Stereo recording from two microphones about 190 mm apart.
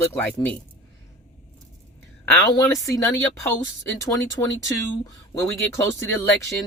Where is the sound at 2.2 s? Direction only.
15° left (ahead or behind).